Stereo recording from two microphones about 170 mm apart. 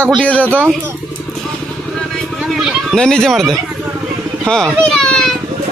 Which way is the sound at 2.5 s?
Centre (ahead or behind).